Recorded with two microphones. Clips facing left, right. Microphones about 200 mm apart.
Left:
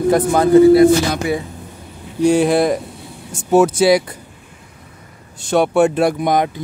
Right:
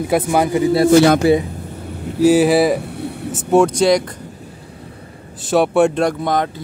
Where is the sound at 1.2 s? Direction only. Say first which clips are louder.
Right 7 dB; 30° right (ahead or behind).